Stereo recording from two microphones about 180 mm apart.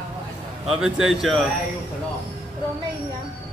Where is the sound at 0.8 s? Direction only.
Centre (ahead or behind).